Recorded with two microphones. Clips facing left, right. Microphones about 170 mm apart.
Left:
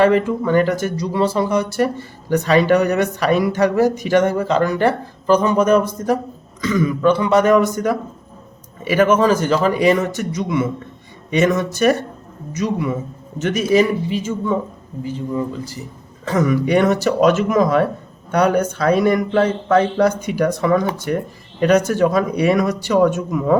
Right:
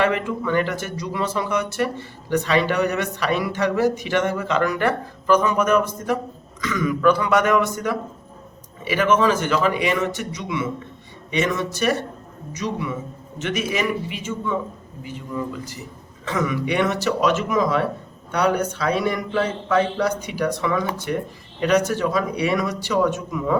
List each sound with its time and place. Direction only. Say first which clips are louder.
0.0 s a man's voice: left 7 dB; 35° left (ahead or behind)